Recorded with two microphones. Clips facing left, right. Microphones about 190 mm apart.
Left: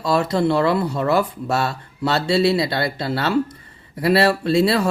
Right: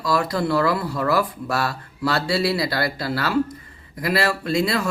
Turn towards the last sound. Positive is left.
turn(degrees=30)  # may be behind; listen again after turning